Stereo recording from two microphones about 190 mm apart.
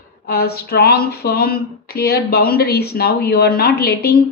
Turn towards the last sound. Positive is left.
turn(degrees=55)  # may be behind; listen again after turning